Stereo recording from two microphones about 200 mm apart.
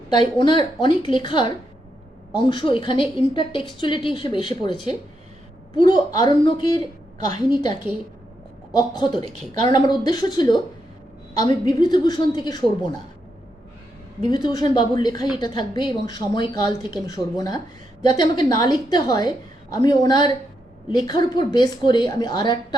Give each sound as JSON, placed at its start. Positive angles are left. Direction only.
{"t": 0.2, "sound": "a woman's voice", "side_deg": 25}
{"t": 8.7, "sound": "a woman's voice", "side_deg": 20}
{"t": 14.3, "sound": "a woman's voice", "side_deg": 20}